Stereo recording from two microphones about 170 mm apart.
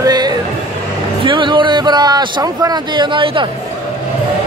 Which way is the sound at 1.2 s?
30° right (ahead or behind).